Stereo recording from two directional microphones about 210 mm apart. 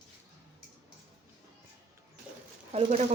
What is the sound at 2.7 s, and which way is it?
Speech, 30° right (ahead or behind).